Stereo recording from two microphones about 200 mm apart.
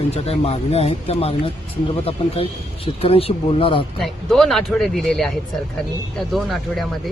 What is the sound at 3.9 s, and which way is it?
Speech, centre (ahead or behind).